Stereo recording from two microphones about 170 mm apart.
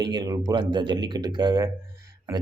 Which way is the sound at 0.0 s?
25° right (ahead or behind).